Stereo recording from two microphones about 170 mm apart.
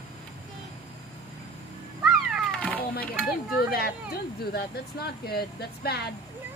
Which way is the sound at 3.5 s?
60° left (ahead or behind).